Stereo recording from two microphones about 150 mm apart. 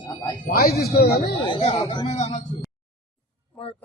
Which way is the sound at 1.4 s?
35° left (ahead or behind).